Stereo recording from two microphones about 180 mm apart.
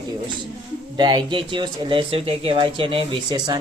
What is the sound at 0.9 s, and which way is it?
Speech, 25° right (ahead or behind).